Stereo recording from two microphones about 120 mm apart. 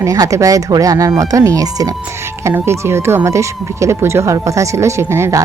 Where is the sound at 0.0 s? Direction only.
30° right (ahead or behind).